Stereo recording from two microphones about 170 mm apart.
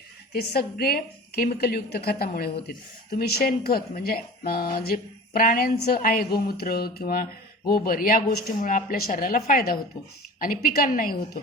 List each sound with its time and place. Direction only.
0.3 s speech: 65° left (ahead or behind)